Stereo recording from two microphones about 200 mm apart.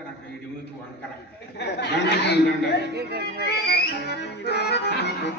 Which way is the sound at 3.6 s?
60° left (ahead or behind).